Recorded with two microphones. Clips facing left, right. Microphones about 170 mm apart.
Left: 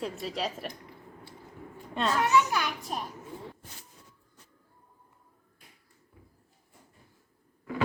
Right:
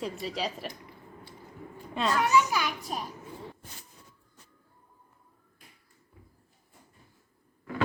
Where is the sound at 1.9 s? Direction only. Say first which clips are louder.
Even; centre (ahead or behind).